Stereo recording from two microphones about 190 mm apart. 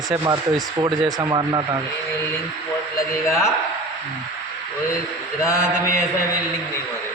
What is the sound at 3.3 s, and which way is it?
Mantra, 15° left (ahead or behind).